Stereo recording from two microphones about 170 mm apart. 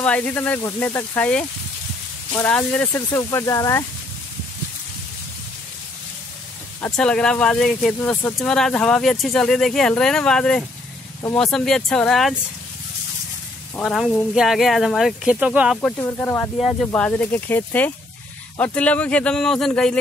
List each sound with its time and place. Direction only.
0.0 s speech: 5° left (ahead or behind)
6.8 s speech: 5° left (ahead or behind)
13.7 s speech: centre (ahead or behind)
16.0 s speech: 10° left (ahead or behind)